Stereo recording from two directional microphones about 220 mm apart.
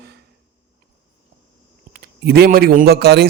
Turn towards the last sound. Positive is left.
turn(degrees=-50)  # may be behind; listen again after turning